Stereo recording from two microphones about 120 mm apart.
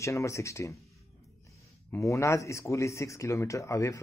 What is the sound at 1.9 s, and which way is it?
Speech, 25° left (ahead or behind).